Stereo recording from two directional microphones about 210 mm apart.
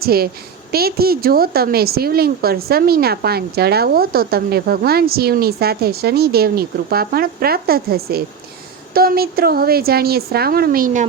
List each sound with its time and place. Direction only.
0.0 s a woman's voice: 45° right (ahead or behind)